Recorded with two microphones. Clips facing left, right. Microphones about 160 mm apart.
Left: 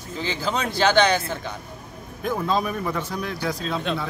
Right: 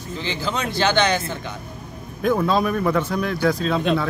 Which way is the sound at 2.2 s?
80° right.